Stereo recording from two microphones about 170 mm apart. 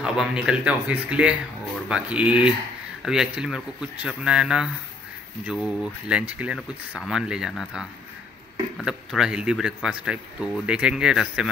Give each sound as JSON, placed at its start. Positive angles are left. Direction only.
{"t": 0.0, "sound": "speech", "side_deg": -5}